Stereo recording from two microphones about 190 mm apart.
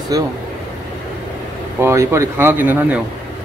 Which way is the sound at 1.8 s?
15° right (ahead or behind).